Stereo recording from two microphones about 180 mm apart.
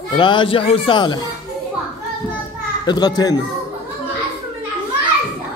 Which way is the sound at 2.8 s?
25° left (ahead or behind).